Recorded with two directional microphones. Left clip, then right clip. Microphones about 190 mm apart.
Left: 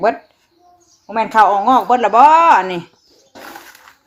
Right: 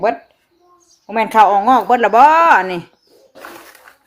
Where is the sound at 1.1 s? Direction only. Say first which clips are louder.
Right 1 dB; 15° right (ahead or behind).